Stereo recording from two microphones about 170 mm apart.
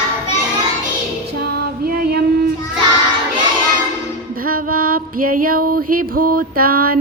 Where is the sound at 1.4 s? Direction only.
65° right (ahead or behind).